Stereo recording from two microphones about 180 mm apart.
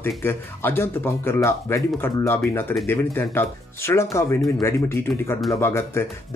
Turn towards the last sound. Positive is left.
turn(degrees=15)  # may be behind; listen again after turning